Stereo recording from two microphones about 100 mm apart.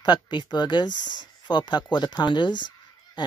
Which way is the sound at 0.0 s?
50° left (ahead or behind).